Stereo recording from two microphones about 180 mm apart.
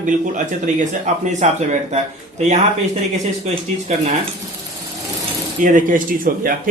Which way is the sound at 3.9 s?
40° right (ahead or behind).